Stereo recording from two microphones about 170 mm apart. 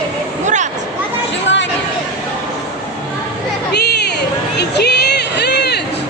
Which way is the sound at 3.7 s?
80° left.